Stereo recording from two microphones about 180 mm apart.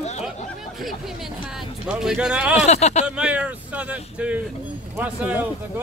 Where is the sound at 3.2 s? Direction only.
5° right (ahead or behind).